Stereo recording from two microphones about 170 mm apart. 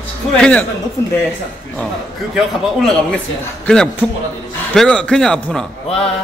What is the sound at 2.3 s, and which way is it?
A man's voice, centre (ahead or behind).